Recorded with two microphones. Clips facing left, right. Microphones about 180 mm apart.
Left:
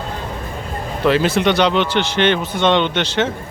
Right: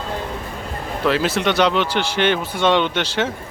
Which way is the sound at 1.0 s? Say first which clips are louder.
Left 4 dB; centre (ahead or behind).